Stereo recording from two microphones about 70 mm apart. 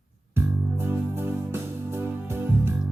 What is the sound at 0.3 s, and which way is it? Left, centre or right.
Music, right.